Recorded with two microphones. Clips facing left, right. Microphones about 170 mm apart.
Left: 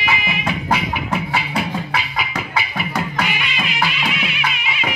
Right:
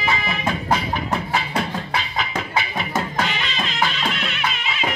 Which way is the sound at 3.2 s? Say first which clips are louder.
Left 1 dB; 10° left (ahead or behind).